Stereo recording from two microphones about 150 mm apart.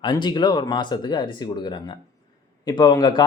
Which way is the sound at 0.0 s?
30° left (ahead or behind).